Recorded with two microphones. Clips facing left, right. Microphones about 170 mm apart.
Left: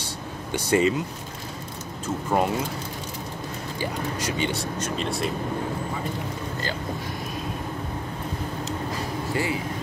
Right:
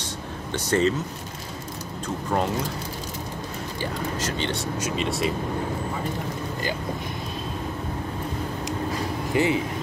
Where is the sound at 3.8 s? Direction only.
10° left (ahead or behind).